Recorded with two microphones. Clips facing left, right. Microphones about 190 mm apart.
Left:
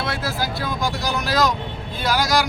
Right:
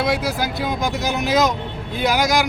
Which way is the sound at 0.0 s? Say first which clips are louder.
Right 5 dB; 15° right (ahead or behind).